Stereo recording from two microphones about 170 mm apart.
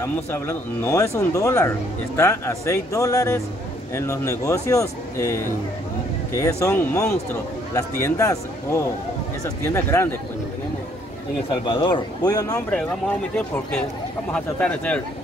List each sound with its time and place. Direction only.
0.0 s speech: 15° left (ahead or behind)
11.6 s speech: 30° left (ahead or behind)
12.5 s speech: 5° left (ahead or behind)
14.3 s speech: 5° left (ahead or behind)